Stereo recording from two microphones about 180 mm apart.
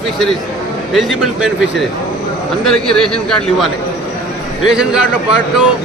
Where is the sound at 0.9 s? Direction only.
Centre (ahead or behind).